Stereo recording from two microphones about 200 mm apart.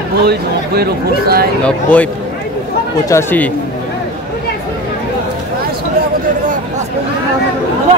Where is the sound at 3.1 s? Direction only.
10° left (ahead or behind).